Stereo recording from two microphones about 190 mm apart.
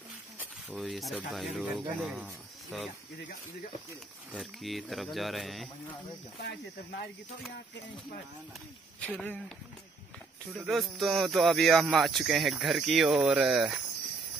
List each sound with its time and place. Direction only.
0.4 s speech: 5° right (ahead or behind)
4.3 s speech: centre (ahead or behind)
6.4 s speech: 60° left (ahead or behind)
9.0 s speech: 5° left (ahead or behind)
10.4 s speech: centre (ahead or behind)